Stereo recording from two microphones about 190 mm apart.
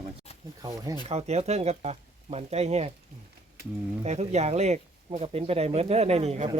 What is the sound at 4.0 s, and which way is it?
Speech, 35° right (ahead or behind).